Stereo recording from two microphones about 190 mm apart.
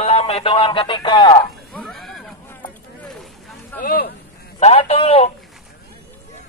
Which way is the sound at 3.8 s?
50° left (ahead or behind).